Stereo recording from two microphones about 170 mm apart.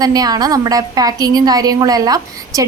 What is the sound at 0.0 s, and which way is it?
A woman's voice, 20° right (ahead or behind).